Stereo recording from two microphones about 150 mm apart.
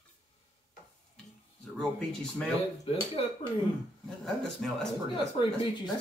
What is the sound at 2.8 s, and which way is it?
Speech, 35° left (ahead or behind).